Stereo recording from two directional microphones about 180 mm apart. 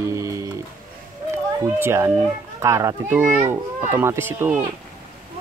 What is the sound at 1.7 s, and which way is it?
A child's voice, 15° right (ahead or behind).